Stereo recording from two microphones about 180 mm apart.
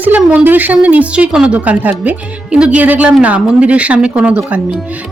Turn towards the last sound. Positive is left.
turn(degrees=-10)  # may be behind; listen again after turning